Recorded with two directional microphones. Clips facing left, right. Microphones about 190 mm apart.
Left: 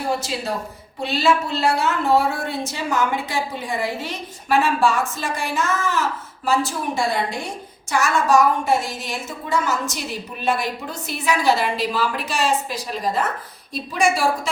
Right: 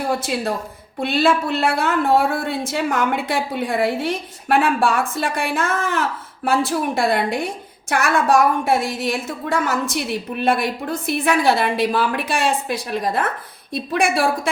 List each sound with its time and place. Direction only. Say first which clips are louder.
0.2 s a woman's voice: right 3 dB; 55° right (ahead or behind)